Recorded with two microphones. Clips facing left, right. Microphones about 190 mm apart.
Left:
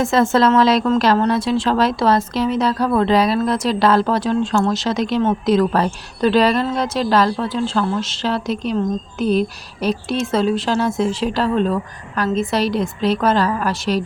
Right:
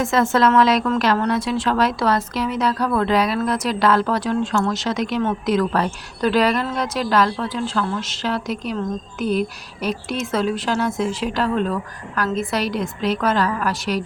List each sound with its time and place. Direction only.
0.0 s a woman's voice: 30° left (ahead or behind)